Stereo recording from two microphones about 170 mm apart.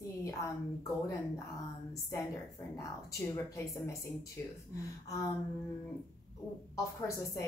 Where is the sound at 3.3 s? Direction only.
20° left (ahead or behind).